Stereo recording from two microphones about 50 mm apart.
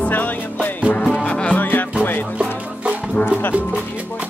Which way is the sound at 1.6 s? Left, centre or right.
Left.